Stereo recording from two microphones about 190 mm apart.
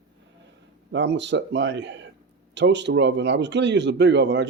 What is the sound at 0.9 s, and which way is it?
Speech, 70° right (ahead or behind).